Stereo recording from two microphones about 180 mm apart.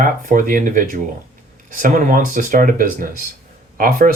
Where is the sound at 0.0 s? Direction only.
50° right (ahead or behind).